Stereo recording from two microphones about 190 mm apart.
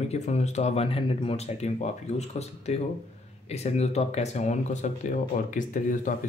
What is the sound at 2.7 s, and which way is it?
Speech, 35° left (ahead or behind).